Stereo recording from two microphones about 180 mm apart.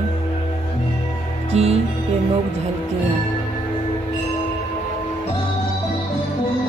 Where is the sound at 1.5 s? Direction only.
35° right (ahead or behind).